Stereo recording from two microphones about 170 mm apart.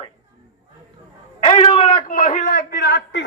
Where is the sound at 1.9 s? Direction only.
50° left (ahead or behind); by 3.3 s 90° left.